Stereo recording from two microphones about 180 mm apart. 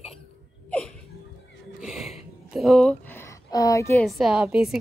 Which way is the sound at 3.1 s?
15° left (ahead or behind).